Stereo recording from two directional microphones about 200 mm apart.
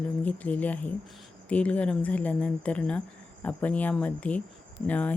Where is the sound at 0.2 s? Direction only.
5° left (ahead or behind).